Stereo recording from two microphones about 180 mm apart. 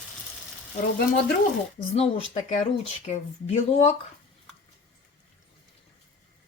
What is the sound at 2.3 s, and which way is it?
Speech, 45° left (ahead or behind).